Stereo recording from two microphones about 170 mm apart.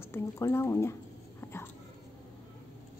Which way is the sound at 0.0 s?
15° left (ahead or behind).